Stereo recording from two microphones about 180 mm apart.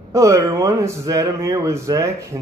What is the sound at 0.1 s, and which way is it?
A man's voice, 15° right (ahead or behind).